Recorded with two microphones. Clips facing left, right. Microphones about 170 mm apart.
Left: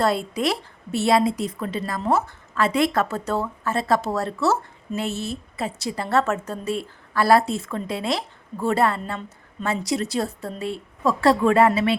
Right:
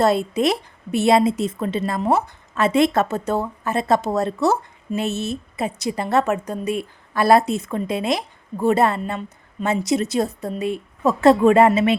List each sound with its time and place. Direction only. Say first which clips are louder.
0.0 s a woman's voice: right 4 dB; 20° right (ahead or behind)